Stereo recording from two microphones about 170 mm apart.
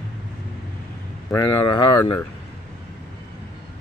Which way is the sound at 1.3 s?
25° left (ahead or behind).